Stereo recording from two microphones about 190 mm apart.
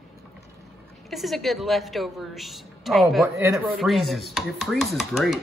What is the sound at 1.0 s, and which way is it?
A woman's voice, centre (ahead or behind).